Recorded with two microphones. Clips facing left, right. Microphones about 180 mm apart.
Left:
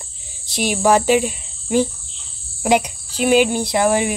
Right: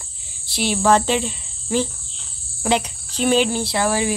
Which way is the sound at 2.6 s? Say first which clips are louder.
Left 4 dB; 15° left (ahead or behind).